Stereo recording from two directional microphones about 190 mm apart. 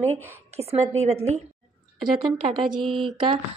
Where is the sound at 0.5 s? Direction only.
35° right (ahead or behind).